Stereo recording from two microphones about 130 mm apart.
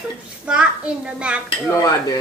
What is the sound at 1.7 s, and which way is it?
Speech, 30° left (ahead or behind).